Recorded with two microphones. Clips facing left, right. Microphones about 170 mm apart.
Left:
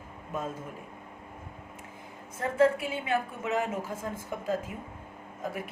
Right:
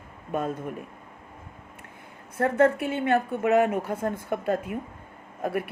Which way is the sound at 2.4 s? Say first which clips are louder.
Right 3 dB; 60° right (ahead or behind).